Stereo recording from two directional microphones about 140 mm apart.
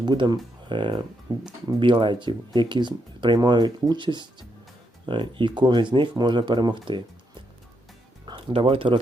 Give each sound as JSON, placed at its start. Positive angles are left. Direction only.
{"t": 0.0, "sound": "speech", "side_deg": -30}